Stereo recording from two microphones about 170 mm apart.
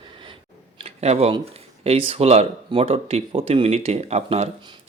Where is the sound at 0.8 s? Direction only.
40° right (ahead or behind).